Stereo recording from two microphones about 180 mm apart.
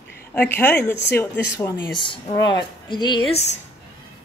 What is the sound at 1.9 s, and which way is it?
Speech, 25° left (ahead or behind).